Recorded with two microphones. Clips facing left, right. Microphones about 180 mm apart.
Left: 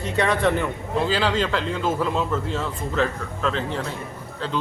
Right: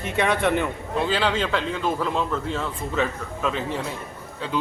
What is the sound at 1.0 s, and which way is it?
A man's voice, centre (ahead or behind).